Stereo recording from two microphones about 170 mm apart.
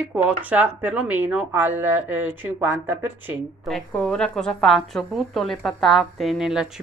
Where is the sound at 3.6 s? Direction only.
Centre (ahead or behind).